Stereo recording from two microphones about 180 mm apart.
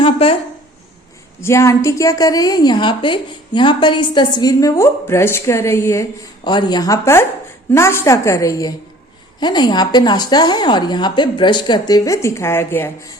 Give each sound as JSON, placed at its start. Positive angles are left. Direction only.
{"t": 0.0, "sound": "a woman's voice", "side_deg": 30}
{"t": 1.4, "sound": "a woman's voice", "side_deg": 15}